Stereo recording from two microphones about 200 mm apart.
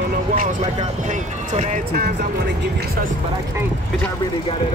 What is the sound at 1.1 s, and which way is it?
Speech, 40° right (ahead or behind).